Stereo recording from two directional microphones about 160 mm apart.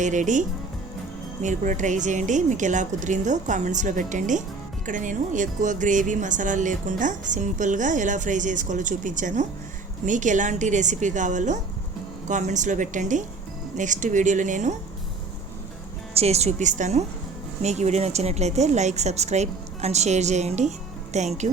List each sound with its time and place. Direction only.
0.0 s speech: 50° right (ahead or behind)
16.1 s speech: 40° right (ahead or behind)